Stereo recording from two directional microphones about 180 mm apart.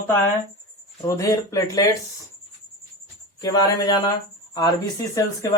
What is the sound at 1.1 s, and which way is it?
Speech, 20° left (ahead or behind).